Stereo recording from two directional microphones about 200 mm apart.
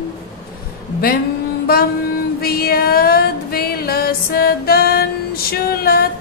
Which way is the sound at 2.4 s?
50° left (ahead or behind).